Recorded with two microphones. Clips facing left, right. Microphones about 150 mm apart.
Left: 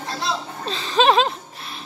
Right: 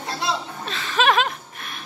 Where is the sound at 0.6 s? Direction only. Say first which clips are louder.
Left 4 dB; 30° left (ahead or behind).